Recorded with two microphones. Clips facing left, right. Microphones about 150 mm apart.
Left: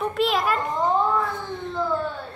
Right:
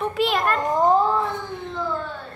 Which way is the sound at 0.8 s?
35° right (ahead or behind).